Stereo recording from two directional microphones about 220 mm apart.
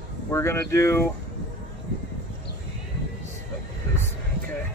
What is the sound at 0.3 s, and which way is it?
Speech, 10° left (ahead or behind).